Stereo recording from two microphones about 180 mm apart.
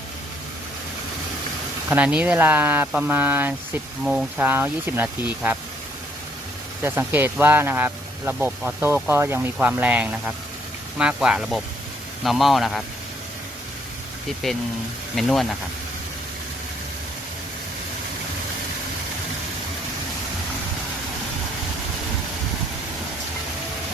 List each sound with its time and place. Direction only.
1.9 s speech: 5° right (ahead or behind)
6.8 s speech: 10° right (ahead or behind)
14.4 s speech: centre (ahead or behind)